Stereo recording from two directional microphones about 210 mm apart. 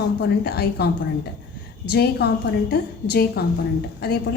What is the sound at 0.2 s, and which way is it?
A woman's voice, 50° left (ahead or behind).